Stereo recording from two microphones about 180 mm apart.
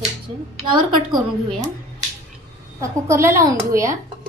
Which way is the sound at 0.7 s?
25° right (ahead or behind).